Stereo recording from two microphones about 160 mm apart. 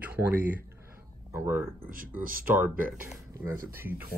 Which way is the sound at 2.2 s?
60° right (ahead or behind).